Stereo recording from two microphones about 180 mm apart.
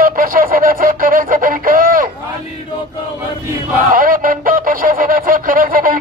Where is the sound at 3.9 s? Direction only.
50° right (ahead or behind).